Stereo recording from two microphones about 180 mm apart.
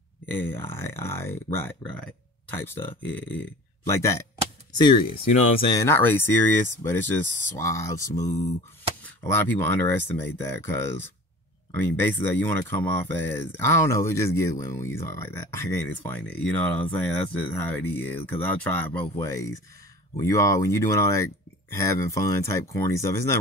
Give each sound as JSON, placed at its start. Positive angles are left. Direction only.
{"t": 0.4, "sound": "speech", "side_deg": 15}
{"t": 5.8, "sound": "speech", "side_deg": 15}